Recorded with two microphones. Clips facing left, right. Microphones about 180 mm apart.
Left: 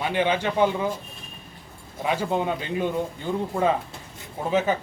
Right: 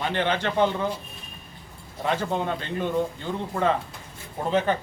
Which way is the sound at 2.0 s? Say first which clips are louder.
Left 1 dB; 10° left (ahead or behind).